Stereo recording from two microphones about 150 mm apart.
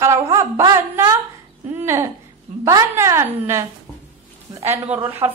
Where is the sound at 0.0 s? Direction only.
20° right (ahead or behind).